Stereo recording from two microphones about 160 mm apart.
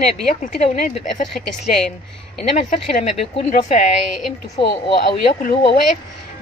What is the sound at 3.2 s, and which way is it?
Speech, 50° left (ahead or behind).